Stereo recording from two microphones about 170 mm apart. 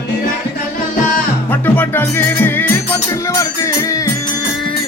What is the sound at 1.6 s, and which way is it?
Music, 10° left (ahead or behind).